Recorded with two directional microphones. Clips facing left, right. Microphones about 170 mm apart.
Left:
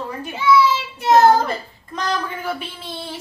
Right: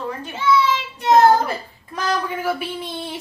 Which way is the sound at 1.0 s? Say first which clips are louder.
Even; 5° left (ahead or behind).